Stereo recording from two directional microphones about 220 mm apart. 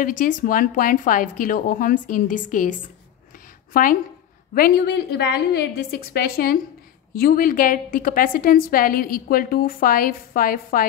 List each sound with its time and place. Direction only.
0.2 s a woman's voice: 40° left (ahead or behind)
3.7 s a woman's voice: 40° left (ahead or behind)